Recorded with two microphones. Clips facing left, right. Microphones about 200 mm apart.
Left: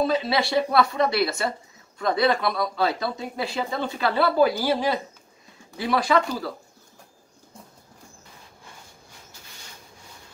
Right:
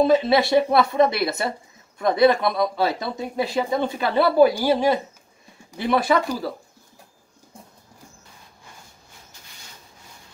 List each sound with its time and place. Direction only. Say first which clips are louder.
0.0 s speech: right 6 dB; 25° right (ahead or behind)